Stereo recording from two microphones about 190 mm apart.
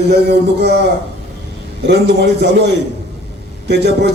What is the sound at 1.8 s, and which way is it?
A man's voice, 65° right (ahead or behind).